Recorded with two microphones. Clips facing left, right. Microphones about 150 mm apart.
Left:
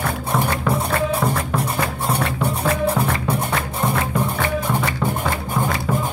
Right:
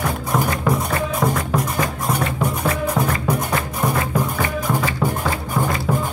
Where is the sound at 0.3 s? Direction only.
30° left (ahead or behind).